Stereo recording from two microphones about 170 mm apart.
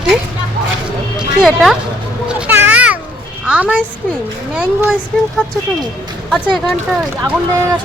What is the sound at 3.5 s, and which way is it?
A child's voice, 10° right (ahead or behind).